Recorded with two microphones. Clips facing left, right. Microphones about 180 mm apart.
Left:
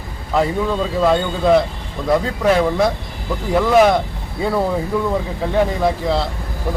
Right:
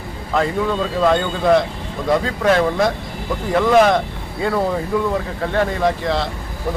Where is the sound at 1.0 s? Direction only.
5° left (ahead or behind).